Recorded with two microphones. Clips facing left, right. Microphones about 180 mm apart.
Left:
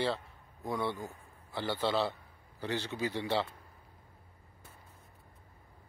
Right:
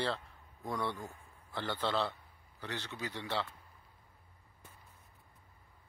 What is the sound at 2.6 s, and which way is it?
Speech, 30° left (ahead or behind).